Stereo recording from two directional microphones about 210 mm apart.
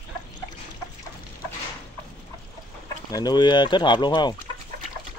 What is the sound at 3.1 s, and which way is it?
Speech, 20° left (ahead or behind).